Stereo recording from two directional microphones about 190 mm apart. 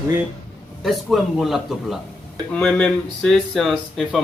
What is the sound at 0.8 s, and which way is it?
A man's voice, centre (ahead or behind).